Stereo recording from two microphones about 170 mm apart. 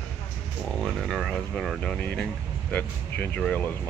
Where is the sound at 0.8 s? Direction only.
Centre (ahead or behind).